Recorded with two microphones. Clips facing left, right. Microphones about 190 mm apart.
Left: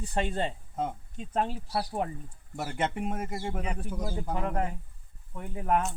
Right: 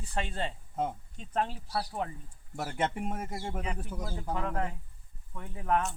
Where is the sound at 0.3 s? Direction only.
15° left (ahead or behind).